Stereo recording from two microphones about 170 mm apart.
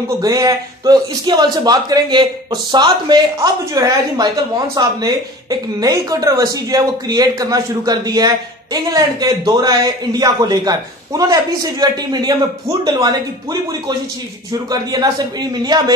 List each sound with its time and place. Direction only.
0.2 s a man's voice: 20° right (ahead or behind)